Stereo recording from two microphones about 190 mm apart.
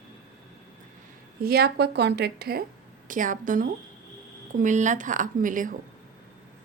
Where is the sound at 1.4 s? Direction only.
55° right (ahead or behind).